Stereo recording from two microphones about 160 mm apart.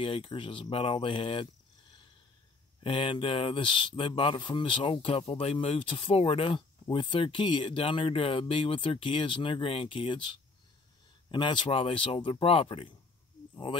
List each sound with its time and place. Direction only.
0.0 s speech: 35° left (ahead or behind)
2.8 s speech: 30° left (ahead or behind)